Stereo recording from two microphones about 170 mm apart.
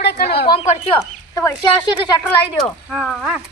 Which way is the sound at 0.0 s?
70° left (ahead or behind).